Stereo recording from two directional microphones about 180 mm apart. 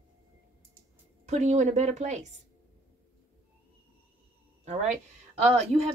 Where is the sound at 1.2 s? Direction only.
40° right (ahead or behind).